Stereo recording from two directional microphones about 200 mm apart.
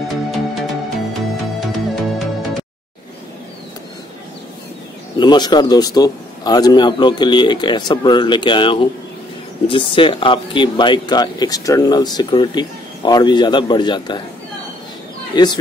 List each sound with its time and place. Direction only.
0.1 s music: centre (ahead or behind)
5.2 s speech: 20° left (ahead or behind)
15.3 s speech: 20° left (ahead or behind)